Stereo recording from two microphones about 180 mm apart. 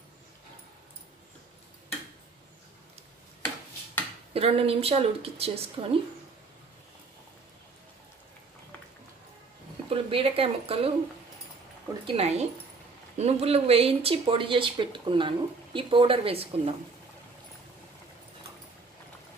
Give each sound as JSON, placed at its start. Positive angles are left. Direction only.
{"t": 4.3, "sound": "speech", "side_deg": -35}
{"t": 9.8, "sound": "speech", "side_deg": -30}
{"t": 12.0, "sound": "speech", "side_deg": -35}